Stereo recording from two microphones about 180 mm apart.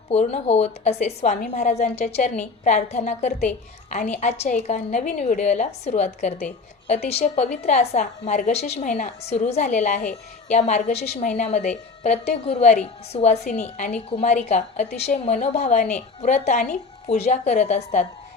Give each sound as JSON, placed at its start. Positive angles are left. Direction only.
{"t": 0.1, "sound": "a woman's voice", "side_deg": 35}